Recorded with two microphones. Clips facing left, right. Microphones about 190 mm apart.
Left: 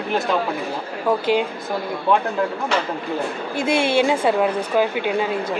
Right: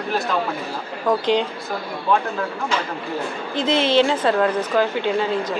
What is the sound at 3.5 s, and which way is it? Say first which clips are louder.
Speech: right 1 dB; 10° left (ahead or behind).